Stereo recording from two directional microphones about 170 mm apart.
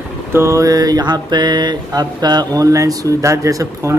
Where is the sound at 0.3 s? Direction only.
15° right (ahead or behind).